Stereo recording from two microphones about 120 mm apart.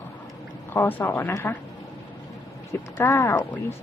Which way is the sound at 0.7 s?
15° left (ahead or behind).